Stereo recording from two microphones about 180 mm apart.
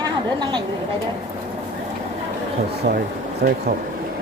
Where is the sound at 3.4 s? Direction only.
60° right (ahead or behind).